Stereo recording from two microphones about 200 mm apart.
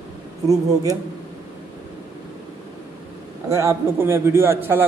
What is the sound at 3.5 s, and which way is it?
A man's voice, 15° right (ahead or behind).